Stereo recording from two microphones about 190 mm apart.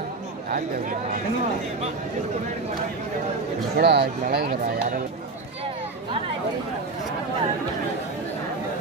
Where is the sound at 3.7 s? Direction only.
65° right (ahead or behind).